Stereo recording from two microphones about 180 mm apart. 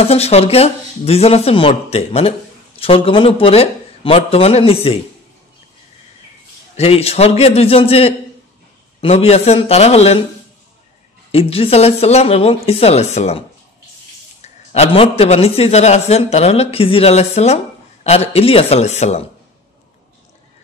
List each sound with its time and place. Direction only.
0.0 s a man's voice: 35° left (ahead or behind)
6.8 s a man's voice: 35° left (ahead or behind)
11.3 s a man's voice: 35° left (ahead or behind)
14.4 s a man's voice: 35° left (ahead or behind)